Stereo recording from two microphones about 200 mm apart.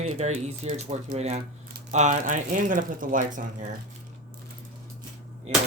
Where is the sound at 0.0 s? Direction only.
35° right (ahead or behind).